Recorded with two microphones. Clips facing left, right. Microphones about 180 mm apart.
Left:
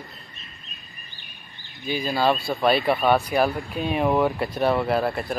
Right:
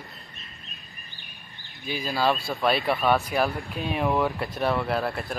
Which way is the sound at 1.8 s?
Centre (ahead or behind).